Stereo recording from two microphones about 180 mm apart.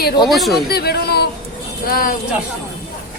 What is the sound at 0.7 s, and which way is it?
A woman's voice, 60° left (ahead or behind).